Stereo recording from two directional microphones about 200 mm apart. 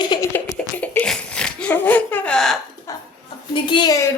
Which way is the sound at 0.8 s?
5° left (ahead or behind).